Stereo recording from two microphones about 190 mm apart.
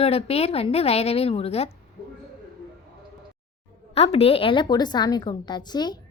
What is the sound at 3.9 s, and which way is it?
A woman's voice, 30° left (ahead or behind).